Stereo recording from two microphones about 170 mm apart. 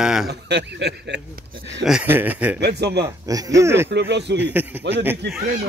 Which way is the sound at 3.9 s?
85° right.